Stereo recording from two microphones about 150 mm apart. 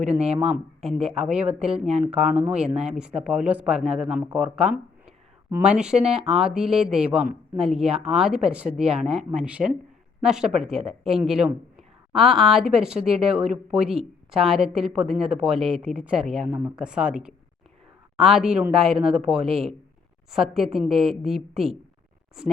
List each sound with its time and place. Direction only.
0.0 s speech: 5° right (ahead or behind)
19.4 s speech: 40° right (ahead or behind)
20.3 s speech: centre (ahead or behind)